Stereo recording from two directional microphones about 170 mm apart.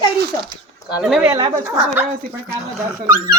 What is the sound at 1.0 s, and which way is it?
Speech, 5° right (ahead or behind).